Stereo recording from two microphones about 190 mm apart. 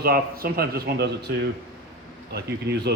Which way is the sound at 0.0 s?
55° right (ahead or behind).